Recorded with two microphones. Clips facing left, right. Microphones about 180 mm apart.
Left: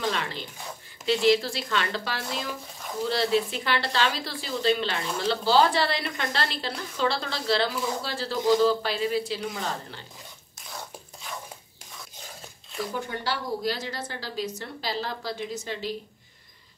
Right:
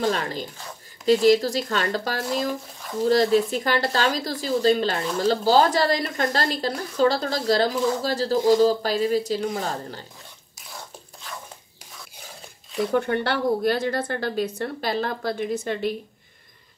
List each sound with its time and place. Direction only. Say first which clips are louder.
0.0 s a woman's voice: right 5 dB; 40° right (ahead or behind)
12.9 s speech: right 9 dB; 60° right (ahead or behind)